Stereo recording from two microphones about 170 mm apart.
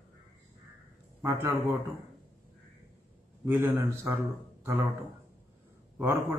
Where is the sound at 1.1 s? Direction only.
10° right (ahead or behind).